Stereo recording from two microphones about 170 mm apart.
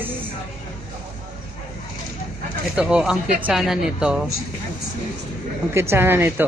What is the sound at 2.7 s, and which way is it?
A woman's voice, 5° right (ahead or behind).